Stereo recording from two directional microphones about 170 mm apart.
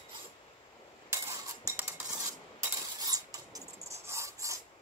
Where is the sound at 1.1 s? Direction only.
15° right (ahead or behind).